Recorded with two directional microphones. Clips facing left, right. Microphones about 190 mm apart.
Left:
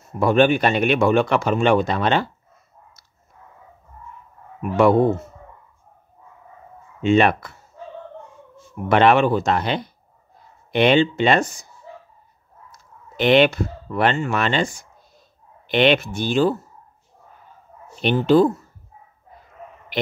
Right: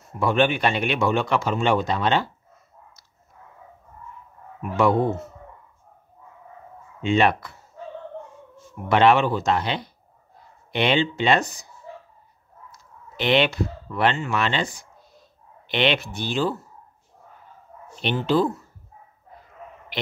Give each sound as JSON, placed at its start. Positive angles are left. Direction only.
{"t": 0.2, "sound": "speech", "side_deg": 45}
{"t": 4.6, "sound": "speech", "side_deg": 55}
{"t": 7.0, "sound": "speech", "side_deg": 50}
{"t": 8.8, "sound": "speech", "side_deg": 50}
{"t": 13.1, "sound": "speech", "side_deg": 50}
{"t": 18.0, "sound": "speech", "side_deg": 45}